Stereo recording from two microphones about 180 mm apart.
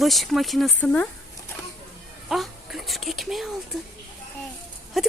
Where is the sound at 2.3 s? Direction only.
Centre (ahead or behind).